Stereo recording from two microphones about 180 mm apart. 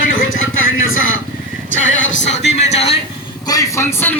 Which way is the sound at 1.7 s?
90° left.